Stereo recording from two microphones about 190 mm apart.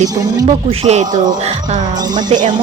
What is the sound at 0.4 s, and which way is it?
Speech, 35° right (ahead or behind).